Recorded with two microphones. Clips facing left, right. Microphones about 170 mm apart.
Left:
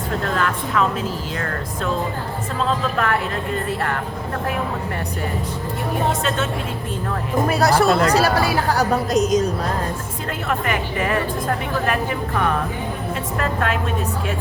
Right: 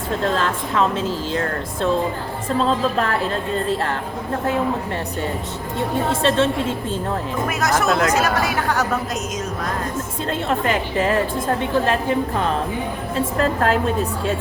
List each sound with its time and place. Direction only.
0.2 s a woman's voice: 30° right (ahead or behind)
6.1 s a woman's voice: 30° right (ahead or behind)
7.4 s a woman's voice: 35° left (ahead or behind)
10.5 s a woman's voice: 25° right (ahead or behind)